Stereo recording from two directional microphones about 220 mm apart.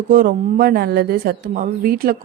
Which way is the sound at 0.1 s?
40° right (ahead or behind).